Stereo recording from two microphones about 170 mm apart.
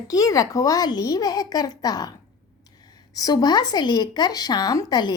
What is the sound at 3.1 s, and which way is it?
Speech, 25° left (ahead or behind).